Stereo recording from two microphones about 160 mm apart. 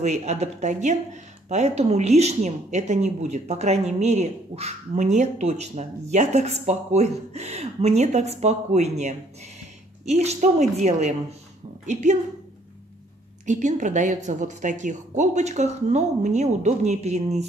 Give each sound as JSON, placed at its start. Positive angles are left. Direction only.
{"t": 0.0, "sound": "speech", "side_deg": -45}
{"t": 13.5, "sound": "speech", "side_deg": -50}